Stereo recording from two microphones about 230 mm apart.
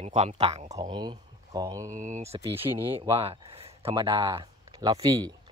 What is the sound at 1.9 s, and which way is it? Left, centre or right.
Speech, right.